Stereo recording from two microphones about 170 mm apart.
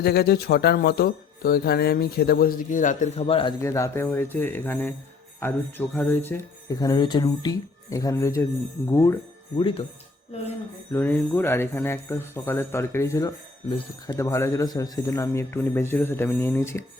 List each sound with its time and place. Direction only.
0.0 s speech: 70° left (ahead or behind); by 3.2 s 50° left (ahead or behind)
3.2 s speech: 30° left (ahead or behind)
3.6 s speech: 15° left (ahead or behind)
9.6 s speech: 30° left (ahead or behind)
10.9 s speech: 10° left (ahead or behind)